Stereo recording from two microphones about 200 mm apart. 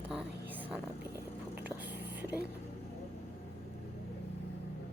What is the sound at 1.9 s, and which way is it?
Whispering, 50° right (ahead or behind).